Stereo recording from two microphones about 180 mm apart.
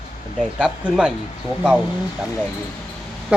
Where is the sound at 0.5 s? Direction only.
5° right (ahead or behind).